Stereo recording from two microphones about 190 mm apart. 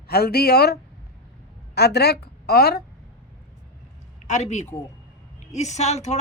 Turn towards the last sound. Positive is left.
turn(degrees=35)  # may be behind; listen again after turning